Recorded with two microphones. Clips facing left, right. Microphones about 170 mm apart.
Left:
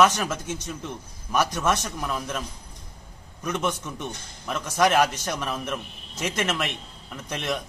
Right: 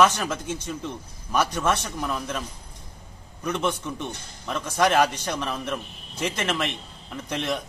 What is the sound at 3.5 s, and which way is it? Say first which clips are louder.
A man's voice: right 1 dB; 10° left (ahead or behind).